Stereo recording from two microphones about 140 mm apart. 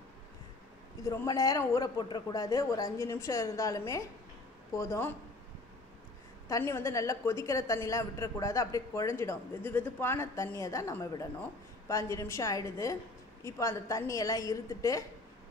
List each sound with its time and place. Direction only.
1.0 s a woman's voice: 25° left (ahead or behind)
6.5 s a woman's voice: 20° left (ahead or behind)